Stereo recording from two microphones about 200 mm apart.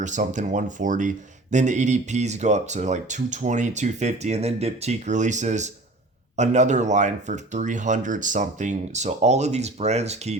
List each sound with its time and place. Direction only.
0.0 s speech: 40° right (ahead or behind)